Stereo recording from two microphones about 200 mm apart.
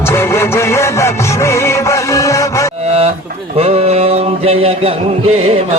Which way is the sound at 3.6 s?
30° right (ahead or behind).